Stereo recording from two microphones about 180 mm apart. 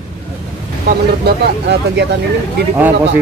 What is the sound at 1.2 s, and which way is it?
Speech, 65° right (ahead or behind).